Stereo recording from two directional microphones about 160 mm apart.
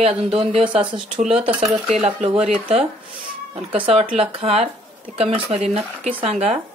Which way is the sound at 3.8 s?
35° right (ahead or behind).